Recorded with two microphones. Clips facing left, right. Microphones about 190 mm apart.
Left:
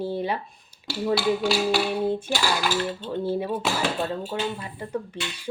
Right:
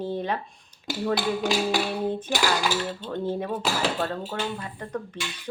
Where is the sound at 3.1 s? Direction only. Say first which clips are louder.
Left 1 dB; 10° left (ahead or behind).